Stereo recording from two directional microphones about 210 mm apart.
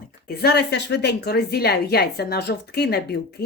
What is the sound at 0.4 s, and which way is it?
A woman's voice, 55° left (ahead or behind).